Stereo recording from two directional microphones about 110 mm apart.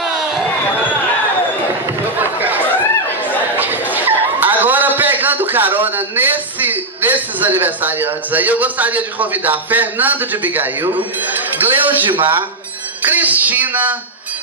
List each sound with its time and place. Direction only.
2.1 s chatter: 15° right (ahead or behind)
3.5 s a man's voice: 15° right (ahead or behind)
12.1 s speech: 50° right (ahead or behind)
13.0 s speech: 15° right (ahead or behind)